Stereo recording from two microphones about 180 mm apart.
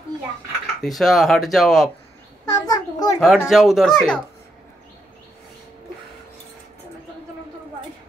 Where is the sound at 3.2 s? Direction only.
Centre (ahead or behind).